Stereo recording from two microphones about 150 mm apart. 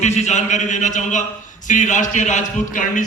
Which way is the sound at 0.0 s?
50° left (ahead or behind).